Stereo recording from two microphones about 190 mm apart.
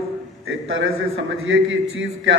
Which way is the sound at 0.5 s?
90° right.